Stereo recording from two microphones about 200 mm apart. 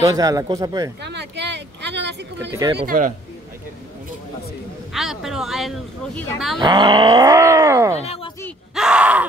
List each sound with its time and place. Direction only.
0.0 s speech: 15° right (ahead or behind)
1.0 s a sound: 60° right (ahead or behind)
2.8 s a man's voice: 45° right (ahead or behind)
4.9 s speech: centre (ahead or behind)
6.6 s speech: 20° right (ahead or behind)
8.0 s speech: 30° left (ahead or behind)
8.7 s speech: 5° right (ahead or behind)